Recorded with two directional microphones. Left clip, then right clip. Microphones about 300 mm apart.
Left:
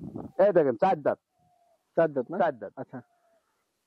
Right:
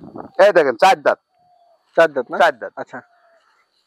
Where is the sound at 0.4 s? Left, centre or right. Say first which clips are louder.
Right 10 dB; centre.